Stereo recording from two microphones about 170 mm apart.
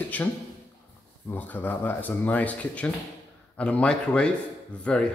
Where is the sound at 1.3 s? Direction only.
10° left (ahead or behind).